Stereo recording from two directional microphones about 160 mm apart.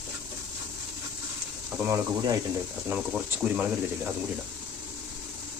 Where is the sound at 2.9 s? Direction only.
10° right (ahead or behind).